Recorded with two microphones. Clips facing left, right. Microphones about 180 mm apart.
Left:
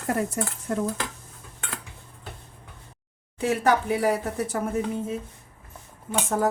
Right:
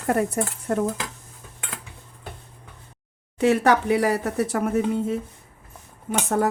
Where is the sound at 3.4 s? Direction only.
70° right (ahead or behind).